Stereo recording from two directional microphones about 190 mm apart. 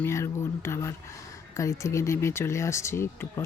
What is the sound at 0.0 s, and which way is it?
Speech, 15° left (ahead or behind).